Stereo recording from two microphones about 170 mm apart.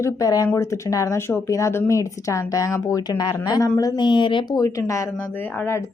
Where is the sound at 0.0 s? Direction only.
20° left (ahead or behind).